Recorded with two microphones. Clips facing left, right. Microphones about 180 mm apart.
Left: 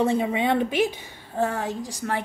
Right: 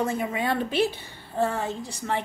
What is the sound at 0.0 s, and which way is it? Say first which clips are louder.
A woman's voice: left 4 dB; 30° left (ahead or behind).